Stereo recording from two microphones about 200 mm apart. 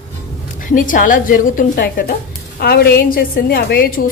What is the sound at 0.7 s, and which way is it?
A woman's voice, 40° left (ahead or behind).